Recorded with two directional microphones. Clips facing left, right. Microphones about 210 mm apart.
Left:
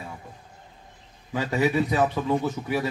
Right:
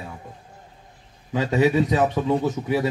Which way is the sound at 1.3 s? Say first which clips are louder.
Right 4 dB; 20° right (ahead or behind).